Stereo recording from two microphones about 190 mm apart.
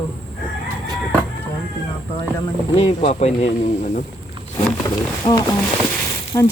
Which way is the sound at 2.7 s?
35° left (ahead or behind).